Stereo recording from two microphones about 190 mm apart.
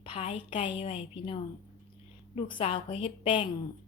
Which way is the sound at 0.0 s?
30° left (ahead or behind).